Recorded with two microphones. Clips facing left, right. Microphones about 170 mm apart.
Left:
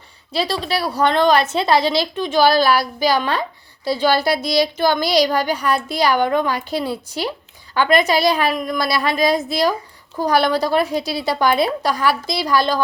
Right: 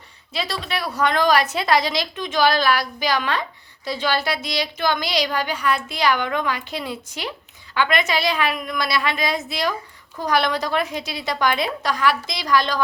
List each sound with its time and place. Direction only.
0.3 s a woman's voice: 30° left (ahead or behind)